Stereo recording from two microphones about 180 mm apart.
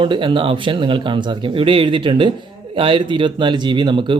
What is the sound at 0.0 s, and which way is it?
Speech, 25° right (ahead or behind).